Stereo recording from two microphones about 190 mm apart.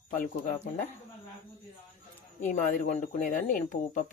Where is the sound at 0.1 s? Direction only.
45° left (ahead or behind).